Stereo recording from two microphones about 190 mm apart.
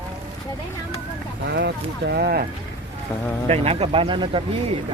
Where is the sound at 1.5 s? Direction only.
60° right (ahead or behind).